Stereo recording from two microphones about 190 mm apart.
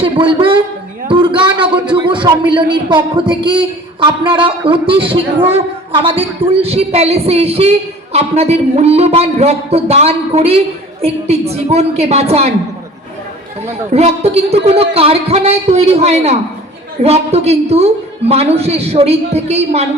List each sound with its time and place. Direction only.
0.0 s speech: 25° right (ahead or behind)
1.0 s a sound: 25° right (ahead or behind)
1.5 s a man's voice: 25° right (ahead or behind)
13.7 s a man's voice: 35° right (ahead or behind)